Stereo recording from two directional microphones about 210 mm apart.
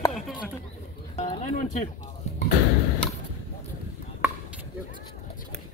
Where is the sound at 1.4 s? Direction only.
35° left (ahead or behind).